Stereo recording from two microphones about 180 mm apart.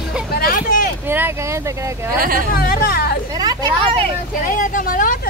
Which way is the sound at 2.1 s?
50° right (ahead or behind).